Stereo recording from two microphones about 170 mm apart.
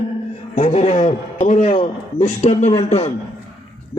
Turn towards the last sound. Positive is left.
turn(degrees=40)  # may be behind; listen again after turning